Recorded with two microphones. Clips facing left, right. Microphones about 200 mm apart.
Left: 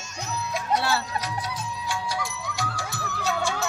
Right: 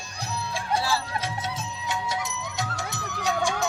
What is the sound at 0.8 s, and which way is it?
Music, 65° left (ahead or behind).